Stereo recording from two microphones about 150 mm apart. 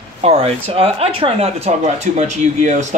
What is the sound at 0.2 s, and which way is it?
Speech, 40° right (ahead or behind).